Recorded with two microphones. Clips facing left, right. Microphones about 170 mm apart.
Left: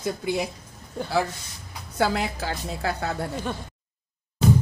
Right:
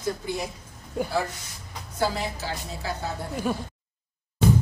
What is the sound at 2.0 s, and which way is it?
A woman's voice, 65° left (ahead or behind).